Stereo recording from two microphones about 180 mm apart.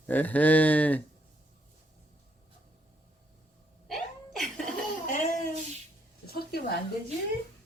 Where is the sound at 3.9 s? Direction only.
Centre (ahead or behind).